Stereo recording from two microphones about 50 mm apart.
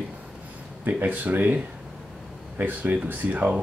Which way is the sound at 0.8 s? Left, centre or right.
Right.